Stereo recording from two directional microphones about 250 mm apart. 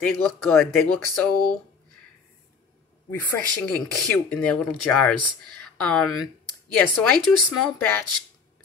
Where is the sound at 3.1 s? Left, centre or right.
Centre.